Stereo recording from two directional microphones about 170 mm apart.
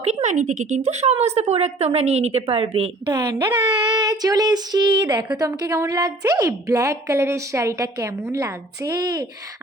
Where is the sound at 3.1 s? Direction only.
20° right (ahead or behind).